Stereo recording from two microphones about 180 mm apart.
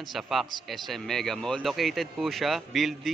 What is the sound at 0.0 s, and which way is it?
Speech, centre (ahead or behind).